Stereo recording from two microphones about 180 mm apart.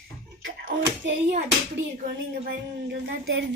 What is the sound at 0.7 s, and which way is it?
Speech, 90° right.